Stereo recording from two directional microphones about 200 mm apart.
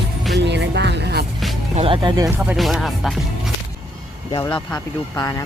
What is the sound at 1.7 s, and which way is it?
Speech, 25° right (ahead or behind).